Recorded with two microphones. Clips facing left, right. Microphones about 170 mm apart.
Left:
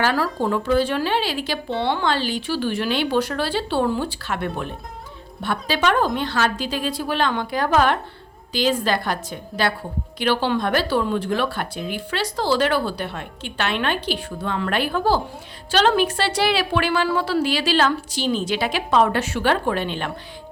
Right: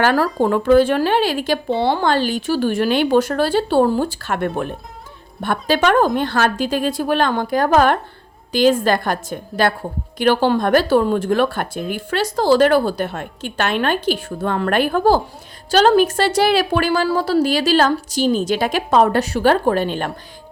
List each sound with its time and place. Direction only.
0.0 s speech: 50° right (ahead or behind)